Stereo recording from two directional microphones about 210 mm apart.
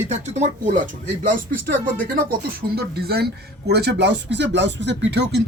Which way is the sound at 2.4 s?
50° right (ahead or behind).